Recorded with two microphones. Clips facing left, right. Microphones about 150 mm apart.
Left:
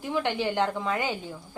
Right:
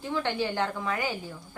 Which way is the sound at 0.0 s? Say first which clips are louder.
Left 2 dB; 15° left (ahead or behind).